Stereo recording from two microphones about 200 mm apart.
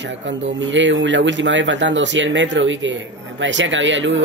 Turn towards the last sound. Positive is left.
turn(degrees=-70)  # may be behind; listen again after turning